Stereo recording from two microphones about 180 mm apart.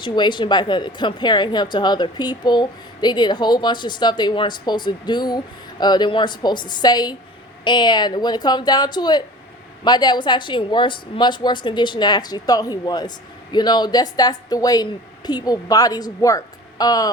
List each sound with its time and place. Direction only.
0.0 s speech: 25° left (ahead or behind)